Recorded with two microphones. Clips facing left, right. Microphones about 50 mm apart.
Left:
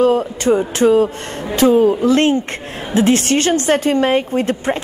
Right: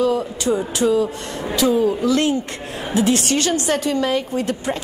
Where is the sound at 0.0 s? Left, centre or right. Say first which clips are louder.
Left 5 dB; left.